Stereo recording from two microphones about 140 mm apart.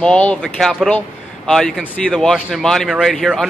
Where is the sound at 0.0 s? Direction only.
5° left (ahead or behind).